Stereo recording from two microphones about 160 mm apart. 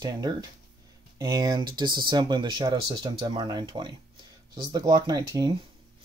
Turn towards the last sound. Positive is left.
turn(degrees=-25)  # may be behind; listen again after turning